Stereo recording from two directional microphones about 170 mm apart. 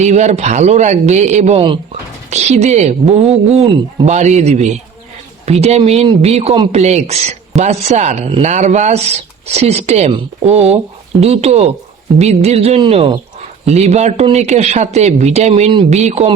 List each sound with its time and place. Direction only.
0.0 s speech: 40° right (ahead or behind)
1.5 s speech: 30° right (ahead or behind)
2.3 s speech: 40° right (ahead or behind)